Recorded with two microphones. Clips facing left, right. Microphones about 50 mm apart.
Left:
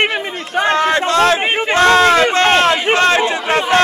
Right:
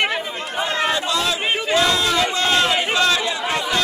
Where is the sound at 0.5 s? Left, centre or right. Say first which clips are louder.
Left 8 dB; left.